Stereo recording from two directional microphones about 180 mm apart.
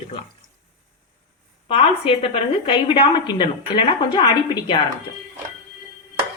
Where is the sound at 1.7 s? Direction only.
30° left (ahead or behind).